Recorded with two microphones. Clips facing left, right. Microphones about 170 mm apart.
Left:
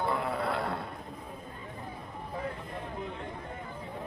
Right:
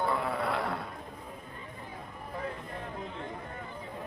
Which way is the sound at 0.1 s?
25° left (ahead or behind).